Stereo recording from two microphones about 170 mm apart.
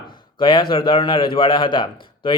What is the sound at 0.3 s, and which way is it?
Speech, 30° left (ahead or behind).